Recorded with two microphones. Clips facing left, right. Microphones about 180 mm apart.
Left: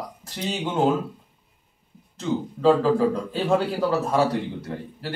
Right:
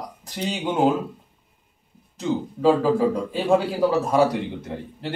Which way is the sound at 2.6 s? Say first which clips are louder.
Even; 10° right (ahead or behind).